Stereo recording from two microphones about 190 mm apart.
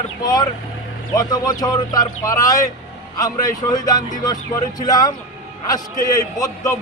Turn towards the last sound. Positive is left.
turn(degrees=20)  # may be behind; listen again after turning